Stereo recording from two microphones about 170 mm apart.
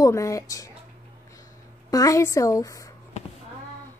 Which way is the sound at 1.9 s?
20° left (ahead or behind).